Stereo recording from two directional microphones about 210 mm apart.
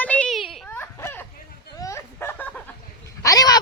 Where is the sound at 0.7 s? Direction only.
10° left (ahead or behind).